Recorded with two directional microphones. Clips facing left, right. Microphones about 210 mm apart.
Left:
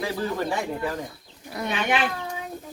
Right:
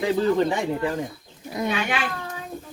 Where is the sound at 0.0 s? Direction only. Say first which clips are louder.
Right 7 dB; 20° right (ahead or behind).